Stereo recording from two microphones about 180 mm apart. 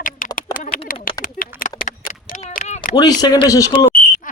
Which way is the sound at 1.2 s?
50° left (ahead or behind).